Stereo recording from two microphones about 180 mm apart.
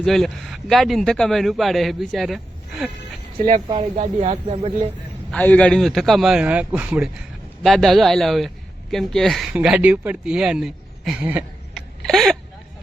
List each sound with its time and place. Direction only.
0.0 s speech: centre (ahead or behind)
3.3 s a man's voice: 45° right (ahead or behind)
5.3 s speech: 5° left (ahead or behind)